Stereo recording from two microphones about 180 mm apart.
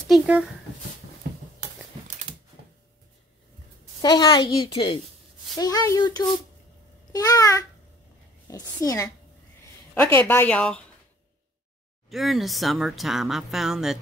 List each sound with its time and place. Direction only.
0.1 s a sound: 5° right (ahead or behind)
4.0 s a woman's voice: 25° left (ahead or behind)
10.1 s speech: 10° left (ahead or behind)
12.1 s speech: centre (ahead or behind)